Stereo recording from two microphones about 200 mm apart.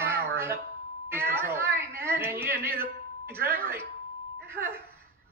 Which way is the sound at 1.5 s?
10° right (ahead or behind).